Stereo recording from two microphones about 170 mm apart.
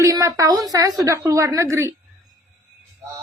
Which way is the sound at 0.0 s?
20° right (ahead or behind).